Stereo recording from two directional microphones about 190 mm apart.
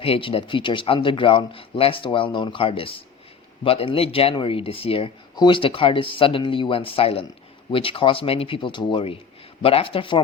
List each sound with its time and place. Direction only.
0.0 s speech: 30° left (ahead or behind)